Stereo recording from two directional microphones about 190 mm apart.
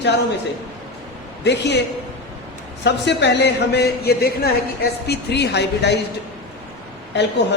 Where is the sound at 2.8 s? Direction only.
65° left (ahead or behind).